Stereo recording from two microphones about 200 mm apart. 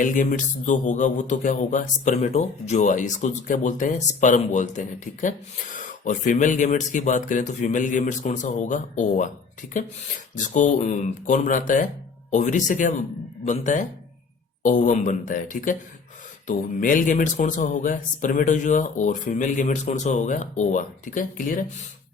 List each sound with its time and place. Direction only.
0.0 s a man's voice: 40° left (ahead or behind)
10.3 s a man's voice: 40° left (ahead or behind)